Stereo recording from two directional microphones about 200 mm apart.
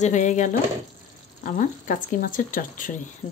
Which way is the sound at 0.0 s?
40° left (ahead or behind).